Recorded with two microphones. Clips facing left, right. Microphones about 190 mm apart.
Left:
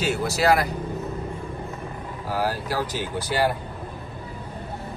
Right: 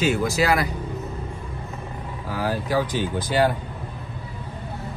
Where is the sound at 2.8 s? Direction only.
10° left (ahead or behind).